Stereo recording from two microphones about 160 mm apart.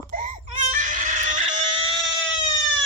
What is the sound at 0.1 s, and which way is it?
Baby cry, 65° right (ahead or behind).